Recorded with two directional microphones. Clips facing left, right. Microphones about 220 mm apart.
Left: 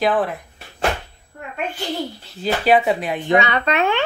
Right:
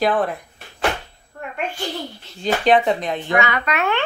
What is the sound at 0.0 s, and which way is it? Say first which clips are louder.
Speech: even; centre (ahead or behind).